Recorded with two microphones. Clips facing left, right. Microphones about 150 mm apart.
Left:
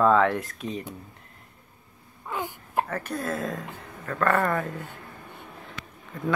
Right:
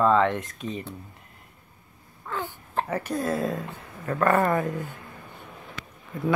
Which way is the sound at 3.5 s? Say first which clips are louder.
Right 2 dB; 20° right (ahead or behind).